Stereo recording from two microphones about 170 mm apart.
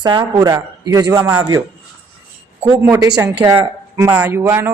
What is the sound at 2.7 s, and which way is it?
A man's voice, 15° right (ahead or behind).